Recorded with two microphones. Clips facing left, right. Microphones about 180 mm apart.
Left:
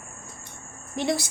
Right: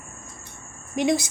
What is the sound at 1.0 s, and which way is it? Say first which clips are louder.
Speech: right 4 dB; 15° right (ahead or behind).